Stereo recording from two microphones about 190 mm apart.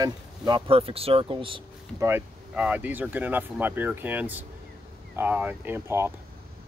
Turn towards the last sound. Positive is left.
turn(degrees=-15)  # may be behind; listen again after turning